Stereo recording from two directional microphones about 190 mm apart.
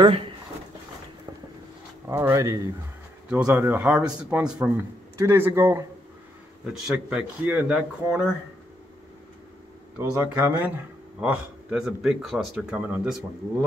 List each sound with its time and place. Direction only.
0.0 s speech: 30° right (ahead or behind)
2.0 s speech: 15° right (ahead or behind)
3.3 s speech: 5° right (ahead or behind)
6.6 s speech: 5° right (ahead or behind)
9.9 s speech: 15° right (ahead or behind)